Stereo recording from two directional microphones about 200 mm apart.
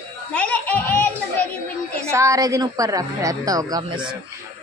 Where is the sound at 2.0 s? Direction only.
15° right (ahead or behind).